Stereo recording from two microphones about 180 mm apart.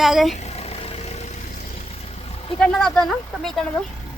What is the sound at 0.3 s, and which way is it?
Vehicle, 35° left (ahead or behind).